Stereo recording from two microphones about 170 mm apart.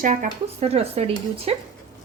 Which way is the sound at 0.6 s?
35° right (ahead or behind).